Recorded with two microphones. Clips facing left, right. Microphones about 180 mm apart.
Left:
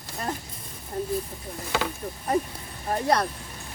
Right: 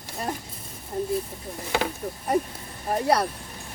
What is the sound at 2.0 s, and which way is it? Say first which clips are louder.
Speech: right 1 dB; 5° right (ahead or behind).